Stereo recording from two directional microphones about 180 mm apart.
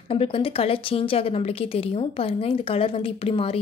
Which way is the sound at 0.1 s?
30° left (ahead or behind).